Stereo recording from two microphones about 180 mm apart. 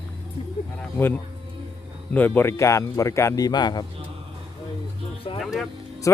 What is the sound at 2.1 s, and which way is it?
Speech, 10° left (ahead or behind).